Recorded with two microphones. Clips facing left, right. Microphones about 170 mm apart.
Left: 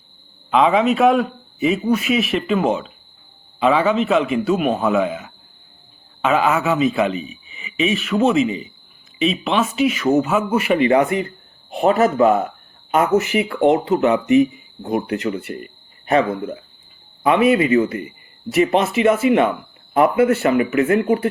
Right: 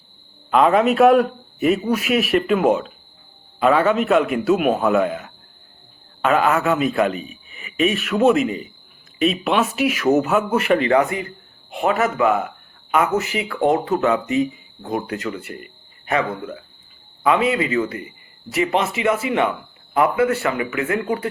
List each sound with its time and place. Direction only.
0.5 s speech: centre (ahead or behind)
7.2 s speech: 45° right (ahead or behind)
7.5 s speech: centre (ahead or behind)
11.0 s speech: 25° left (ahead or behind)